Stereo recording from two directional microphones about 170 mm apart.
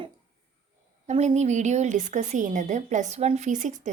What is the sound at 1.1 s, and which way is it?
A woman's voice, 40° right (ahead or behind).